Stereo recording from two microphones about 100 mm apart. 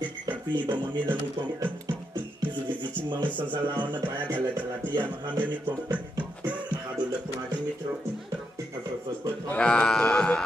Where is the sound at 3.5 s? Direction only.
50° right (ahead or behind).